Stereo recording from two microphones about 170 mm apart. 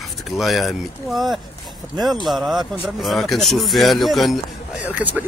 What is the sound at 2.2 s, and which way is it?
Speech, centre (ahead or behind).